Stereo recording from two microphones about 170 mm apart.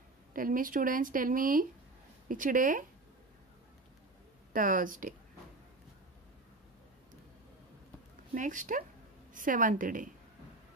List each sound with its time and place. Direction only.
0.3 s speech: 55° right (ahead or behind)
4.5 s speech: 50° right (ahead or behind)
8.4 s speech: 50° right (ahead or behind)